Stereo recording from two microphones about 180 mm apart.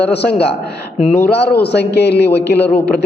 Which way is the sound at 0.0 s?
65° left (ahead or behind).